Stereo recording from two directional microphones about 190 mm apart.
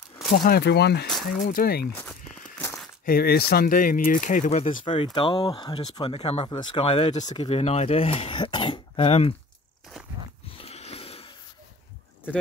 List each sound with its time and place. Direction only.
0.3 s speech: 55° left (ahead or behind)
1.4 s speech: 50° left (ahead or behind)
2.0 s walk: 5° left (ahead or behind)
3.1 s speech: 55° left (ahead or behind); by 9.3 s 30° left (ahead or behind)
10.6 s a sound: 35° left (ahead or behind)